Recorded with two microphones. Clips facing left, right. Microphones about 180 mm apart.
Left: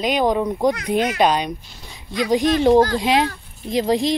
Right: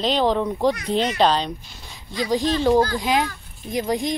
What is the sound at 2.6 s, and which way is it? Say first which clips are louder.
Speech: left 4 dB; 20° left (ahead or behind).